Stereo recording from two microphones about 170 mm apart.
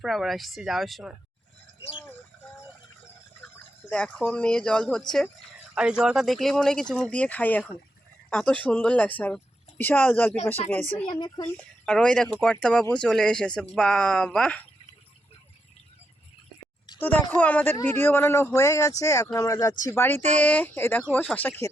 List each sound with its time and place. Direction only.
0.0 s speech: centre (ahead or behind)
3.8 s a man's voice: 10° left (ahead or behind)
5.7 s a man's voice: 5° right (ahead or behind); by 10.3 s 10° left (ahead or behind)
10.9 s speech: 30° left (ahead or behind)
11.5 s speech: 5° left (ahead or behind)
17.0 s a man's voice: 10° left (ahead or behind)